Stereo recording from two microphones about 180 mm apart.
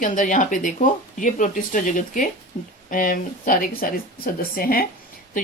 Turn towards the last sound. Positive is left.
turn(degrees=55)  # may be behind; listen again after turning